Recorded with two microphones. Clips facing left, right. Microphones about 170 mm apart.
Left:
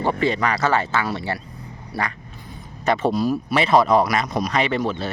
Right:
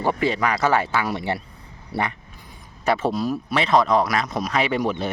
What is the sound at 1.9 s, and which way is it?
Quack, 25° right (ahead or behind).